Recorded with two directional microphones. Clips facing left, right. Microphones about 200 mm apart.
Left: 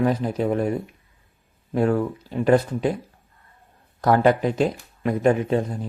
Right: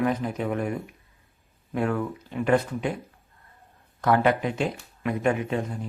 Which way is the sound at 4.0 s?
35° left (ahead or behind).